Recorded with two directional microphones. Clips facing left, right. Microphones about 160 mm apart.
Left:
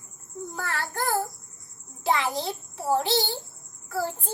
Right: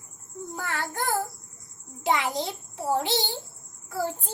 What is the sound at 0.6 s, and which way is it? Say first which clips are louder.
Child singing: even; 20° right (ahead or behind).